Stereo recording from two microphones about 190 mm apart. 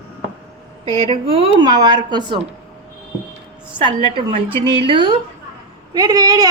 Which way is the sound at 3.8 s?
25° right (ahead or behind).